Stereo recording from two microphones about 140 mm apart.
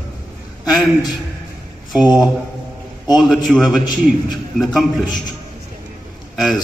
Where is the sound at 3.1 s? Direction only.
Centre (ahead or behind).